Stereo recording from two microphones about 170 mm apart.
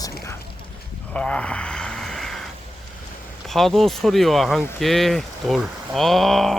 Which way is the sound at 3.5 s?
Centre (ahead or behind).